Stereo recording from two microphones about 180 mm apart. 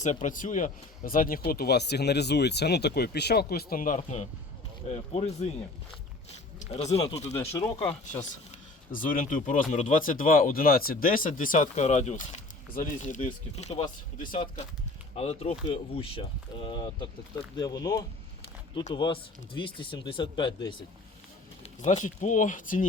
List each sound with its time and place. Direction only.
0.0 s speech: 45° left (ahead or behind)
6.6 s speech: 35° left (ahead or behind)
8.9 s speech: 50° left (ahead or behind)
14.2 s speech: 50° left (ahead or behind)
15.1 s speech: 35° left (ahead or behind)
21.6 s speech: 35° left (ahead or behind)